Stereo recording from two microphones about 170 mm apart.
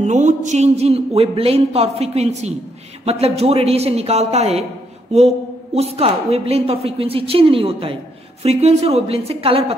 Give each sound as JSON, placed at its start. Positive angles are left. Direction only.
{"t": 0.0, "sound": "a woman's voice", "side_deg": -45}
{"t": 5.8, "sound": "a woman's voice", "side_deg": -35}